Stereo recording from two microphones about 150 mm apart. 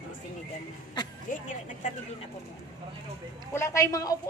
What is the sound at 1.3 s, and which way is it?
Vehicle, 60° left (ahead or behind).